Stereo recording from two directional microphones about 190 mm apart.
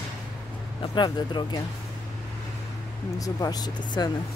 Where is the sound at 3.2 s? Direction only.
20° left (ahead or behind).